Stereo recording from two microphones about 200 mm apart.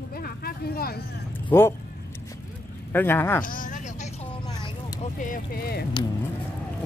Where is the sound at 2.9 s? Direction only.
10° left (ahead or behind).